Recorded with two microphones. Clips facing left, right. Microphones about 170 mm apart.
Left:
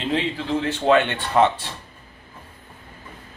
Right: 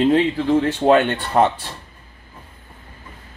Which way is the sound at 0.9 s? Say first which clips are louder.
Right 2 dB; 45° right (ahead or behind).